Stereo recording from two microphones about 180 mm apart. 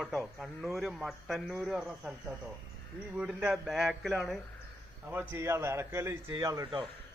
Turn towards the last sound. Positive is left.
turn(degrees=-20)  # may be behind; listen again after turning